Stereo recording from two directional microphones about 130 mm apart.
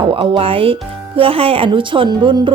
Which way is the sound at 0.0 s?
45° right (ahead or behind).